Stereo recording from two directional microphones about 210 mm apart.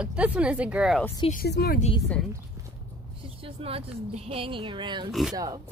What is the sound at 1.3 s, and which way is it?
Speech, 50° left (ahead or behind).